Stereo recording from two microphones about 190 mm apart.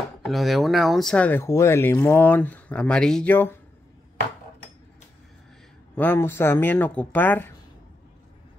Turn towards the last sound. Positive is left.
turn(degrees=10)  # may be behind; listen again after turning